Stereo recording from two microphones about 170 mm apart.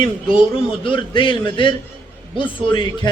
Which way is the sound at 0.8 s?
30° left (ahead or behind).